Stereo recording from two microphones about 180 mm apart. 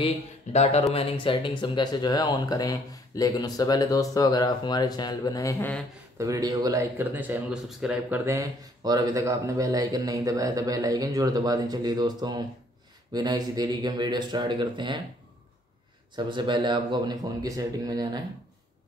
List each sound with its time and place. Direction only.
0.0 s speech: 35° left (ahead or behind); by 5.8 s 15° left (ahead or behind)
6.1 s speech: 20° right (ahead or behind)
8.3 s speech: 20° right (ahead or behind)
16.3 s speech: 25° right (ahead or behind)